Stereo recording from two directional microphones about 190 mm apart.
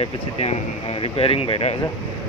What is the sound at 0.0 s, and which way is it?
Speech, 30° left (ahead or behind).